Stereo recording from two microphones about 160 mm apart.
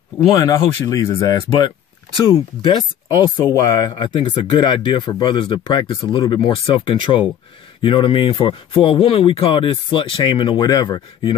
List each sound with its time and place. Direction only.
0.3 s speech: 20° left (ahead or behind)